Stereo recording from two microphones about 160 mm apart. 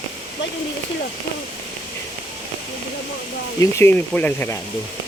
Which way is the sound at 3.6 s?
15° left (ahead or behind).